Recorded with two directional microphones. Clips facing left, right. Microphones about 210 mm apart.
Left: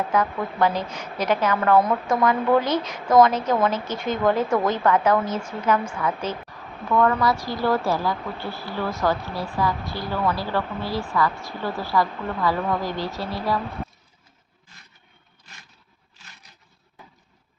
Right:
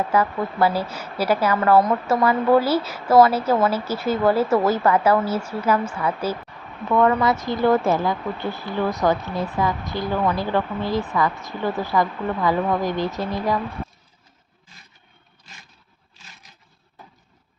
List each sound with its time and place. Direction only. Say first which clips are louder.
0.1 s a woman's voice: right 2 dB; 10° right (ahead or behind)
6.9 s speech: right 2 dB; 20° right (ahead or behind)